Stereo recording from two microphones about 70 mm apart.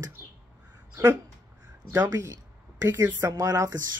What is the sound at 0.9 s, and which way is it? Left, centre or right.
Speech, right.